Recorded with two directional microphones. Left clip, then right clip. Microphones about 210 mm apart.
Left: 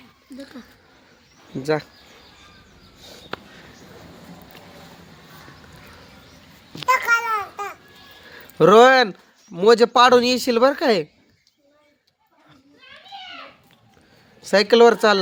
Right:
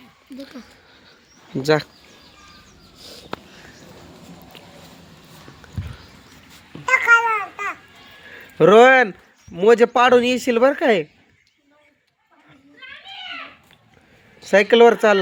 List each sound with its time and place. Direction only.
1.6 s speech: 20° right (ahead or behind)
3.3 s a sound: 35° right (ahead or behind)
6.9 s babbling: 50° left (ahead or behind)
8.4 s speech: 10° right (ahead or behind)
14.4 s speech: 10° right (ahead or behind)